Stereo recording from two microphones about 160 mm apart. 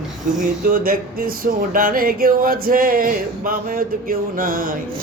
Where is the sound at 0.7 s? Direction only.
65° right (ahead or behind).